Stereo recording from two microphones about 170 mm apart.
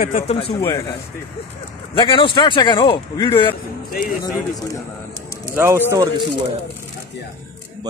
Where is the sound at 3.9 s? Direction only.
60° left (ahead or behind).